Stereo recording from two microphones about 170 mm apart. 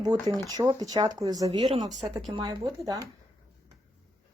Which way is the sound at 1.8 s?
45° right (ahead or behind).